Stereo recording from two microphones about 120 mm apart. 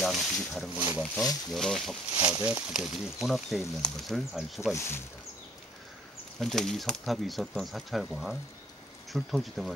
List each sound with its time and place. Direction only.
0.0 s speech: centre (ahead or behind)
0.7 s speech: 15° right (ahead or behind)
1.1 s speech: 5° left (ahead or behind)
2.1 s speech: 20° right (ahead or behind)
2.4 s speech: 5° right (ahead or behind)
4.7 s speech: 20° left (ahead or behind)
6.4 s speech: 5° left (ahead or behind)